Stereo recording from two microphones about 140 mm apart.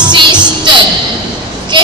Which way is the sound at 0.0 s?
35° right (ahead or behind).